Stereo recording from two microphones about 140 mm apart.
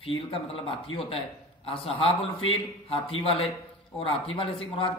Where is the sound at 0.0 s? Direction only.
40° left (ahead or behind).